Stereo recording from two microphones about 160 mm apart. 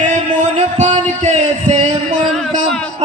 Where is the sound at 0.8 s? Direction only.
45° right (ahead or behind).